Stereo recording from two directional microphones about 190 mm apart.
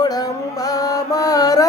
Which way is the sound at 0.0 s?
20° left (ahead or behind).